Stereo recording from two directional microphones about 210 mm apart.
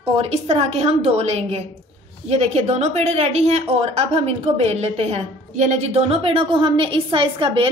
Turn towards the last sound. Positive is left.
turn(degrees=-25)  # may be behind; listen again after turning